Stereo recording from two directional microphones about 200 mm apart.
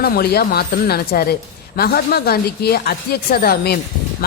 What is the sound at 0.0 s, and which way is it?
A woman's voice, 50° left (ahead or behind).